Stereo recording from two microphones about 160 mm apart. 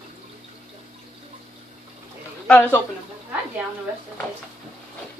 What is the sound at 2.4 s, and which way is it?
Speech, 10° left (ahead or behind).